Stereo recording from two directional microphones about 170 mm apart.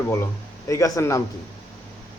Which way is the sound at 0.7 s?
20° left (ahead or behind).